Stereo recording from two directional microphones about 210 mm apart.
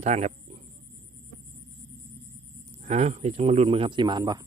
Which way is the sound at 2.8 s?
30° right (ahead or behind).